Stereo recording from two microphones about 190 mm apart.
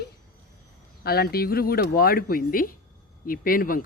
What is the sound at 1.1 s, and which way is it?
Speech, 55° left (ahead or behind).